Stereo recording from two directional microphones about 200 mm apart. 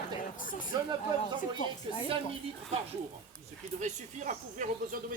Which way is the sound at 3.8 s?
35° right (ahead or behind).